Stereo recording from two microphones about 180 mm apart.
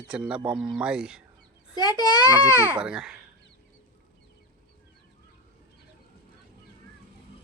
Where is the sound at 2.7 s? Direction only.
5° right (ahead or behind).